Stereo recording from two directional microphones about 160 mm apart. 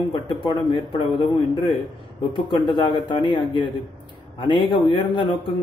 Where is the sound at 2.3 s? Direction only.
30° left (ahead or behind).